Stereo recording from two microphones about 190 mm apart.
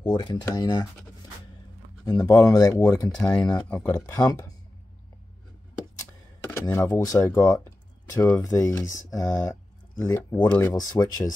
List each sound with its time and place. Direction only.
0.0 s speech: 25° left (ahead or behind)
2.0 s speech: 20° left (ahead or behind)
6.5 s speech: 15° left (ahead or behind)